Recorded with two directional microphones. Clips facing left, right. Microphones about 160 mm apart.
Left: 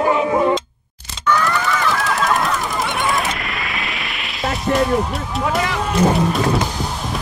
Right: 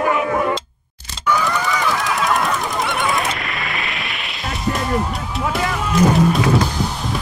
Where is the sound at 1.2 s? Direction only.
5° right (ahead or behind).